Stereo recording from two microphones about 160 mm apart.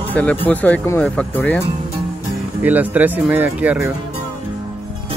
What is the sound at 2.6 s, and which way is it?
Speech, 10° right (ahead or behind).